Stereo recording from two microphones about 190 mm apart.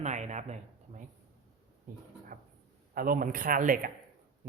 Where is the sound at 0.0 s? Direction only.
40° right (ahead or behind).